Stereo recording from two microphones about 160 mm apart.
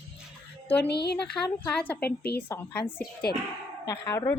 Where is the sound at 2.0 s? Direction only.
90° left.